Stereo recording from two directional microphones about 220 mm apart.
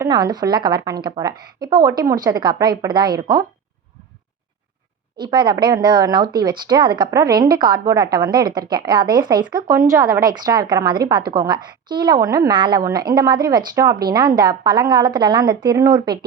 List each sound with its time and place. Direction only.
0.0 s a woman's voice: 20° right (ahead or behind)
5.1 s a woman's voice: 20° right (ahead or behind)